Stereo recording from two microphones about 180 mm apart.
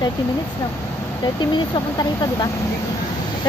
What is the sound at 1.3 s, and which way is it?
Speech, 25° left (ahead or behind).